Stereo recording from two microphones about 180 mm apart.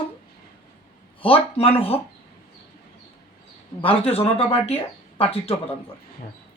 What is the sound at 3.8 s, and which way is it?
Speech, 30° left (ahead or behind).